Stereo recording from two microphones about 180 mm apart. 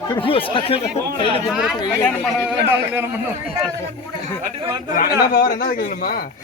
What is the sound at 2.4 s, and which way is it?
Speech, 10° right (ahead or behind).